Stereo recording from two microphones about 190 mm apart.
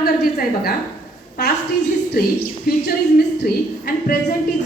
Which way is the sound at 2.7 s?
50° left (ahead or behind).